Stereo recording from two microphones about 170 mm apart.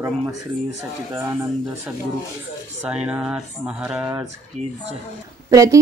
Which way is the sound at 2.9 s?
5° right (ahead or behind).